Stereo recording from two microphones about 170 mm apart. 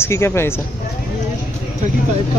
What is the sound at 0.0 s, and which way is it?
Speech, 15° left (ahead or behind).